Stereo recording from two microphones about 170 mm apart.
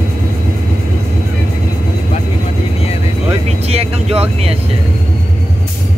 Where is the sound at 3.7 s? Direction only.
35° right (ahead or behind).